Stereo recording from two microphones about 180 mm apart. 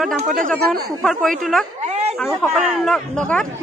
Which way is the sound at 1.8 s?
35° right (ahead or behind).